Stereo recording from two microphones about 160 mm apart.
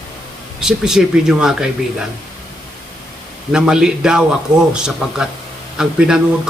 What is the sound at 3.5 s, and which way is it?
A man's voice, 5° right (ahead or behind).